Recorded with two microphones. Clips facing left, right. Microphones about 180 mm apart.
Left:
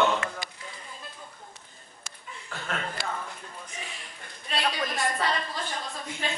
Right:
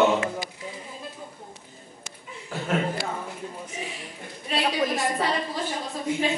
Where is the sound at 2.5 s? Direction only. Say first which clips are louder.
Right 8 dB; 10° right (ahead or behind).